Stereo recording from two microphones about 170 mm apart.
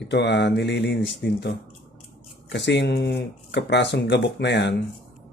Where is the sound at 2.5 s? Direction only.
90° left.